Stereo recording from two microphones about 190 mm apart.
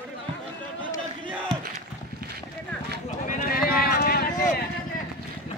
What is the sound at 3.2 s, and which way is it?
Clip-clop, 50° left (ahead or behind).